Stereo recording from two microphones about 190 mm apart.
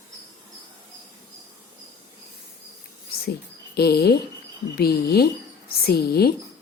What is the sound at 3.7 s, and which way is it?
A woman's voice, 55° left (ahead or behind).